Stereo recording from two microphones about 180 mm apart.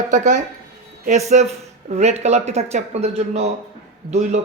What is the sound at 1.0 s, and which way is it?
Speech, 40° right (ahead or behind).